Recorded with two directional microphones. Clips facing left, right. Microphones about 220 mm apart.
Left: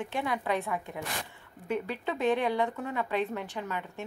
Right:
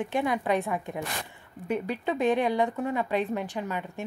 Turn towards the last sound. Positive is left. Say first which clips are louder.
# right 4 dB
turn(degrees=-15)  # may be behind; listen again after turning